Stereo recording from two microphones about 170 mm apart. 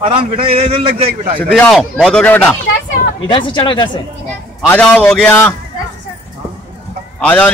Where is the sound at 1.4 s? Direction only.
5° left (ahead or behind).